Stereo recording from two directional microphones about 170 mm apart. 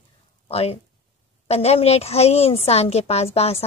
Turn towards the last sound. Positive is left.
turn(degrees=35)  # may be behind; listen again after turning